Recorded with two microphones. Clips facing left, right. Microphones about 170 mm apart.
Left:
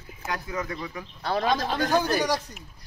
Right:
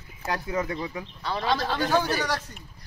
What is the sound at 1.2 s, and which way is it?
Speech, 45° left (ahead or behind).